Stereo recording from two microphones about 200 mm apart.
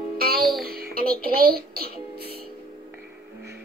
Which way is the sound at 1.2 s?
50° right (ahead or behind).